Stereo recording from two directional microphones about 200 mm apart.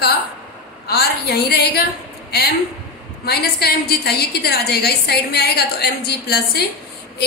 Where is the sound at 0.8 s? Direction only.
50° left (ahead or behind).